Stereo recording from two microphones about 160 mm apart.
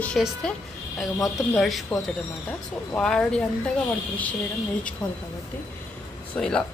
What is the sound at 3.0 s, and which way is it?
Speech, 5° left (ahead or behind).